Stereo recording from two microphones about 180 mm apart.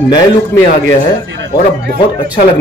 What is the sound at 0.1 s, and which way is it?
Speech, 15° left (ahead or behind).